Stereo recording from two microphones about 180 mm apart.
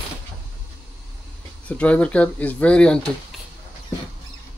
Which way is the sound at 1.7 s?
5° left (ahead or behind).